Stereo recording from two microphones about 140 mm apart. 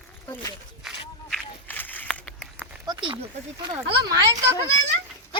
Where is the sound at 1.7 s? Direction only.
15° left (ahead or behind).